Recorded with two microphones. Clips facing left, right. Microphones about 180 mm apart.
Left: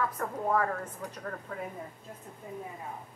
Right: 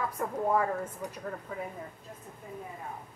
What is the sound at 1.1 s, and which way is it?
Speech, 10° right (ahead or behind).